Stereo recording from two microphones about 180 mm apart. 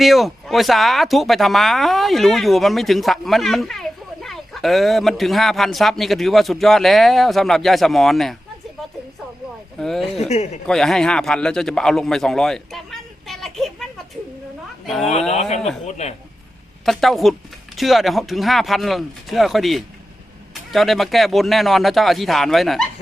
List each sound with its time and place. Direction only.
0.0 s speech: centre (ahead or behind)
9.7 s speech: centre (ahead or behind)
10.2 s a man's voice: 35° left (ahead or behind)
10.7 s a man's voice: centre (ahead or behind)
14.8 s speech: centre (ahead or behind)
15.3 s a man's voice: 35° left (ahead or behind)
16.8 s speech: centre (ahead or behind)